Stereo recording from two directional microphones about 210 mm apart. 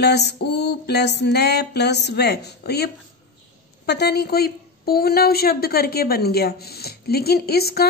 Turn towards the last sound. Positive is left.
turn(degrees=50)  # may be behind; listen again after turning